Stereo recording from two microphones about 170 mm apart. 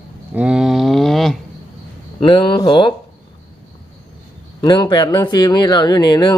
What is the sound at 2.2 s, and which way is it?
Speech, 30° left (ahead or behind).